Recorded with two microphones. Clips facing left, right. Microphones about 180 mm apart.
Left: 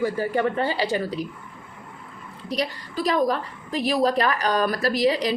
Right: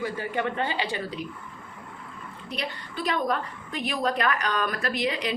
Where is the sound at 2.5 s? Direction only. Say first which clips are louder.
Left 7 dB; 35° left (ahead or behind).